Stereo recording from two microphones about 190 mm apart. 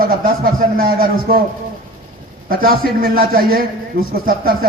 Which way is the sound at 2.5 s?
50° right (ahead or behind).